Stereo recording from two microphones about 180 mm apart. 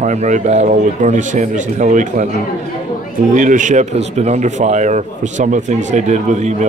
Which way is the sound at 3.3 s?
45° right (ahead or behind).